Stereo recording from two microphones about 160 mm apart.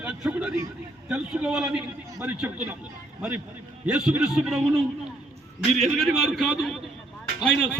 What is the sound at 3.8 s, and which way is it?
A man's voice, 5° right (ahead or behind).